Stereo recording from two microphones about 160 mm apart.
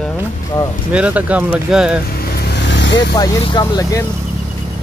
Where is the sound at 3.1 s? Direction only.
20° left (ahead or behind).